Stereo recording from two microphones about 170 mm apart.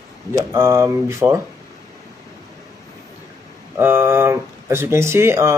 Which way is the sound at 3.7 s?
15° right (ahead or behind).